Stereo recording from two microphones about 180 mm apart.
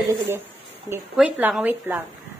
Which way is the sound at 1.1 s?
10° right (ahead or behind).